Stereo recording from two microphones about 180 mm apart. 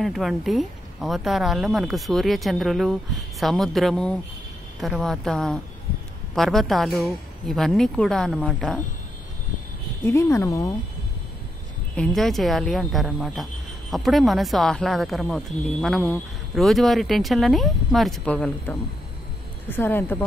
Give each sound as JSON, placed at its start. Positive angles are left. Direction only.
{"t": 0.0, "sound": "speech", "side_deg": 0}
{"t": 10.0, "sound": "speech", "side_deg": 15}
{"t": 11.9, "sound": "speech", "side_deg": 5}